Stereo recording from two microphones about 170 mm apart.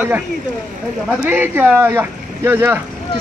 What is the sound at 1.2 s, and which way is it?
Speech, 10° right (ahead or behind).